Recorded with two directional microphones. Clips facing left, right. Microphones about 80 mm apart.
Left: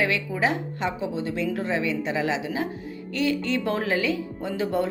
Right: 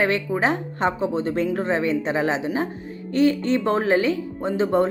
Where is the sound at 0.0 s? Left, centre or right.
Right.